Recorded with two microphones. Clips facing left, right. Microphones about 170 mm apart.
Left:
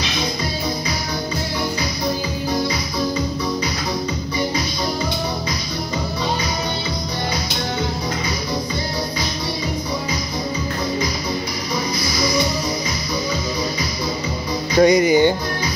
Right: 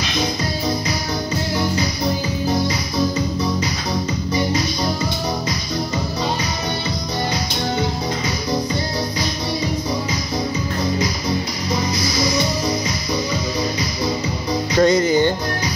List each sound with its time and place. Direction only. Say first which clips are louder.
14.8 s music: left 2 dB; 15° left (ahead or behind)